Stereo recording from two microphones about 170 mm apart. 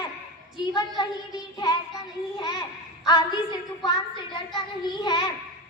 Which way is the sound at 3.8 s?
25° left (ahead or behind).